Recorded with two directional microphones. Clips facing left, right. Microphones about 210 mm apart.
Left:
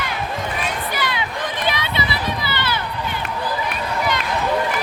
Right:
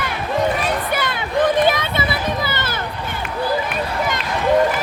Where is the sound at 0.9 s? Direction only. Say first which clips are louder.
Right 5 dB; 50° right (ahead or behind).